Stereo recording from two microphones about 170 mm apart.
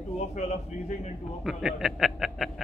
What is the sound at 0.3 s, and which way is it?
Speech, 40° left (ahead or behind).